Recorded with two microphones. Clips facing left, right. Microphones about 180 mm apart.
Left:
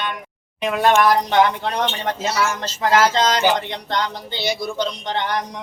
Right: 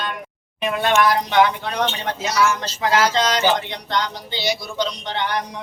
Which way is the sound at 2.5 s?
45° left (ahead or behind).